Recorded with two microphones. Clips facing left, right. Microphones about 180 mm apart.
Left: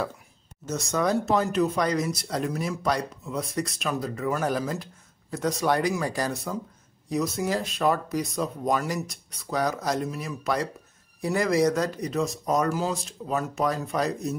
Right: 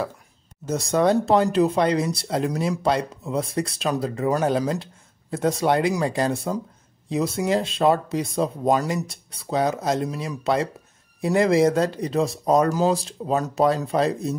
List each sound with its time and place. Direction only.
0.7 s speech: 30° right (ahead or behind)